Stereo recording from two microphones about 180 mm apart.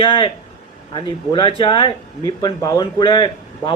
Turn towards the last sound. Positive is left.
turn(degrees=25)  # may be behind; listen again after turning